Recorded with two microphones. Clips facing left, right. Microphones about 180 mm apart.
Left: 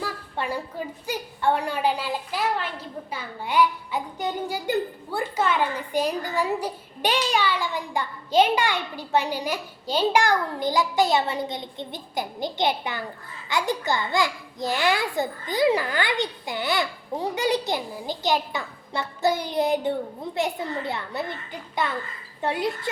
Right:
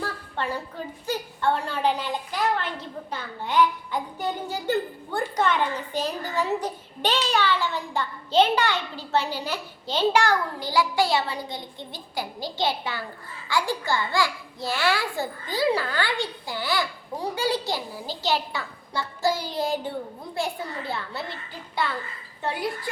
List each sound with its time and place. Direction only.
0.0 s a child's voice: 10° left (ahead or behind)